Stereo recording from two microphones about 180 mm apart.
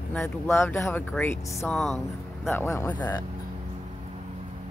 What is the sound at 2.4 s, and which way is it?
Speech, 15° left (ahead or behind).